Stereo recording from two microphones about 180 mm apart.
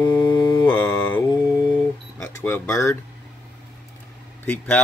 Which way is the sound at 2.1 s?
15° left (ahead or behind).